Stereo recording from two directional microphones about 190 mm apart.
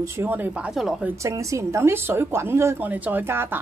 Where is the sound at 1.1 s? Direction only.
15° right (ahead or behind).